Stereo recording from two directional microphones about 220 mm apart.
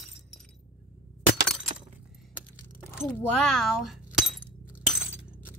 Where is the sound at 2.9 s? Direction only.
5° right (ahead or behind).